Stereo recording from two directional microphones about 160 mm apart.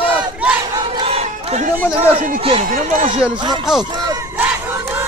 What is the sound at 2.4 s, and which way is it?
Run, 35° right (ahead or behind).